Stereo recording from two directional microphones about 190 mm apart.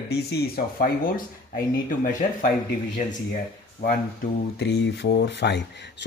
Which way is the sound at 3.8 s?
55° left (ahead or behind).